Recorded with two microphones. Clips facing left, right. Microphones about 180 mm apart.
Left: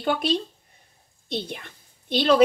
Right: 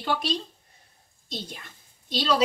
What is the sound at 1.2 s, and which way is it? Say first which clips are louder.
A woman's voice: left 7 dB; 60° left (ahead or behind).